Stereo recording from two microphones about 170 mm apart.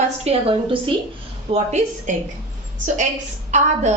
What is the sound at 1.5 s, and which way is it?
Speech, 45° right (ahead or behind).